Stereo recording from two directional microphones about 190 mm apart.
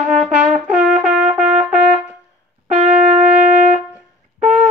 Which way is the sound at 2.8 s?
35° right (ahead or behind).